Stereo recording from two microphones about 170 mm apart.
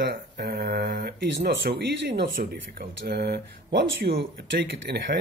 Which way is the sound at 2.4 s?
60° right (ahead or behind).